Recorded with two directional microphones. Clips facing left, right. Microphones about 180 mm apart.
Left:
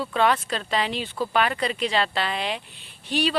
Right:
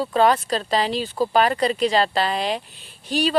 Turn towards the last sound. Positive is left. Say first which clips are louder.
# right 2 dB
turn(degrees=-40)  # may be behind; listen again after turning